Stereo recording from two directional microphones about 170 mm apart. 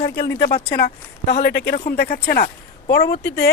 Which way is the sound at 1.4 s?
75° left (ahead or behind).